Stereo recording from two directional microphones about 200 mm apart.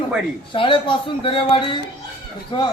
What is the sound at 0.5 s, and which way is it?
Speech, 25° left (ahead or behind).